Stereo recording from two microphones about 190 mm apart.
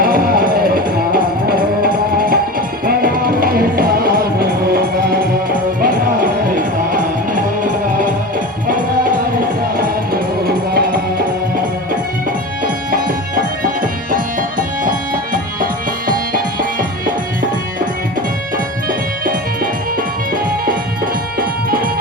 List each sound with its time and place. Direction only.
0.0 s music: 50° right (ahead or behind)
9.7 s music: 50° right (ahead or behind)
12.6 s music: 50° right (ahead or behind)
14.8 s music: 45° right (ahead or behind)
21.3 s music: 50° right (ahead or behind)